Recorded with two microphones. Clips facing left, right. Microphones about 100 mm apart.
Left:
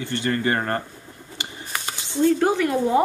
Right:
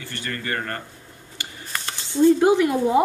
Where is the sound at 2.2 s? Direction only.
15° right (ahead or behind).